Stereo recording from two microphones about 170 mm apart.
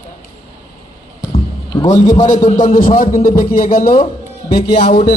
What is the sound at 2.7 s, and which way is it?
A man's voice, 55° left (ahead or behind).